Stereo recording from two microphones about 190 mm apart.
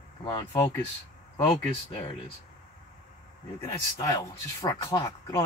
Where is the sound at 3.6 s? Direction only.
15° left (ahead or behind).